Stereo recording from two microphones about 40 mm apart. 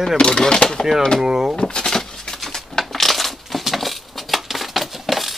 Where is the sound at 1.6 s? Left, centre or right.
Centre.